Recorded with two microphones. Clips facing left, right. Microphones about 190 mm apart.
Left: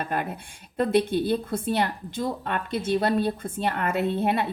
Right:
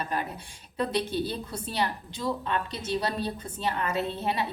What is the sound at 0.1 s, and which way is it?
A woman's voice, 55° left (ahead or behind).